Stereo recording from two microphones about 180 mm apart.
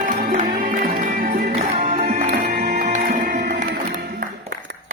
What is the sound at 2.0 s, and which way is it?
Music, 50° right (ahead or behind).